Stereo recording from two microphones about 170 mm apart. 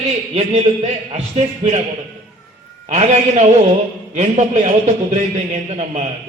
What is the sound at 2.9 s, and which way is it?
A man's voice, 40° right (ahead or behind).